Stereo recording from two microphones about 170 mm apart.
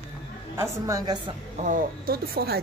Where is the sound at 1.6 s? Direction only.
55° right (ahead or behind).